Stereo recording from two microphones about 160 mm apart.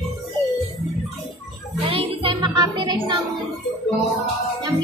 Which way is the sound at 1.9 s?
35° right (ahead or behind).